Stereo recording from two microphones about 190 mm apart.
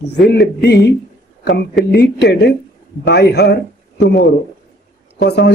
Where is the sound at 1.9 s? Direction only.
60° left (ahead or behind).